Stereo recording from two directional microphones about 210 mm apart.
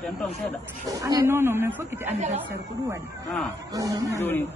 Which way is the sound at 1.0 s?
15° right (ahead or behind).